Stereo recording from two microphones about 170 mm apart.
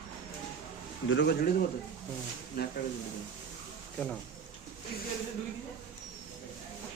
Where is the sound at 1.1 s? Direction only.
85° left.